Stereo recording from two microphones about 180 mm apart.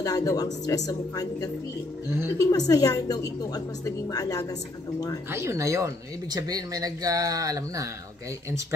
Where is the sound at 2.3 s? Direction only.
20° left (ahead or behind).